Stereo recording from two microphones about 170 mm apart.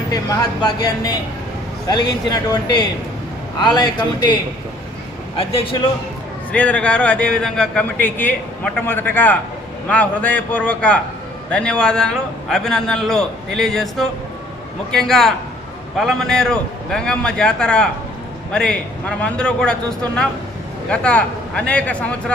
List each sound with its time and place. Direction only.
0.6 s speech: 25° left (ahead or behind)
5.4 s a man's voice: 35° left (ahead or behind)
6.5 s a man's voice: 10° left (ahead or behind)
20.9 s a man's voice: 5° left (ahead or behind)